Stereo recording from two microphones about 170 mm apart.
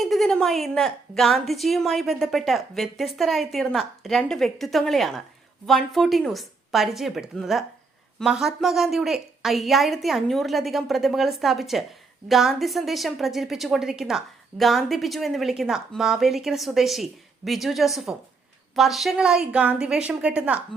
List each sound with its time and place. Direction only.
0.0 s a woman's voice: centre (ahead or behind)